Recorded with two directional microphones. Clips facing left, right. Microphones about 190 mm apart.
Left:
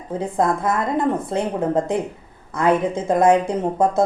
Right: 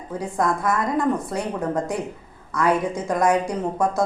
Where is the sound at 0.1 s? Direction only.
25° left (ahead or behind).